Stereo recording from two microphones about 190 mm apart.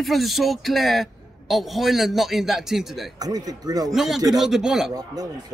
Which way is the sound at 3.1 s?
20° right (ahead or behind).